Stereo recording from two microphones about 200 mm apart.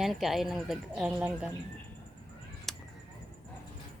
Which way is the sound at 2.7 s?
Centre (ahead or behind).